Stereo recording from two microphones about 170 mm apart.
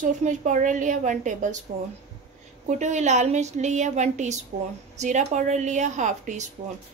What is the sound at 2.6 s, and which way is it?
A woman's voice, 45° right (ahead or behind).